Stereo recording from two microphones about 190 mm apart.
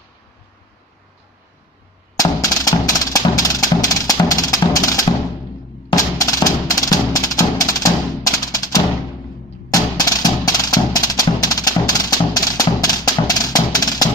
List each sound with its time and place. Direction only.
2.1 s music: 20° left (ahead or behind)